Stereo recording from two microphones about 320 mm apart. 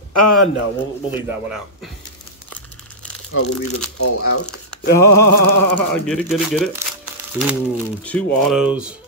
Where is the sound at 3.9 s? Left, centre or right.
Left.